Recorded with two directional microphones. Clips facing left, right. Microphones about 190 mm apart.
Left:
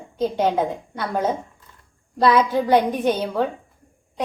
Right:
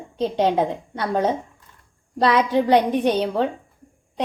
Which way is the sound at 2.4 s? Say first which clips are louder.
Right 3 dB; 20° right (ahead or behind).